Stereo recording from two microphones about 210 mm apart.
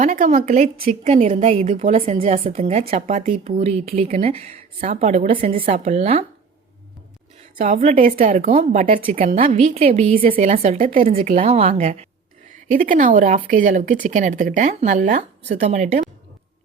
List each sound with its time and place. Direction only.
0.0 s speech: 35° right (ahead or behind)
7.6 s speech: 35° right (ahead or behind)
10.2 s speech: 40° right (ahead or behind)